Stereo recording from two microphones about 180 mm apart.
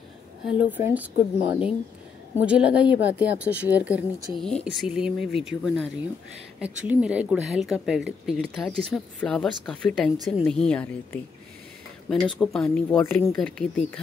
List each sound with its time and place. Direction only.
0.5 s speech: 10° right (ahead or behind)
4.4 s speech: centre (ahead or behind)
12.4 s speech: 5° left (ahead or behind)